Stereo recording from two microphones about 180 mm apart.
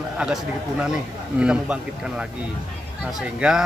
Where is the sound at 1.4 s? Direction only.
5° right (ahead or behind).